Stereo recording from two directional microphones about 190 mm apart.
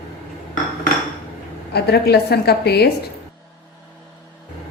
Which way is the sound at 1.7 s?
60° left (ahead or behind).